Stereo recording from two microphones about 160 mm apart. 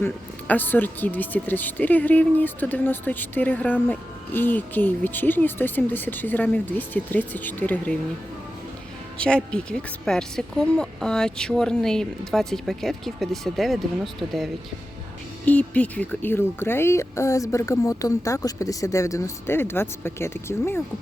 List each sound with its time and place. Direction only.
0.0 s speech: 10° left (ahead or behind)
9.2 s a woman's voice: 5° left (ahead or behind)